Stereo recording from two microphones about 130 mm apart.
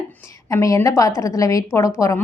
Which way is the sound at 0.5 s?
25° left (ahead or behind).